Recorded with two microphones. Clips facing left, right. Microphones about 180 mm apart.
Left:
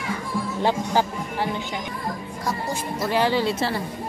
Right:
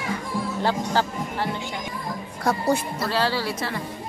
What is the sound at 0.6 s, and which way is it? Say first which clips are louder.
Speech: left 2 dB; 15° left (ahead or behind).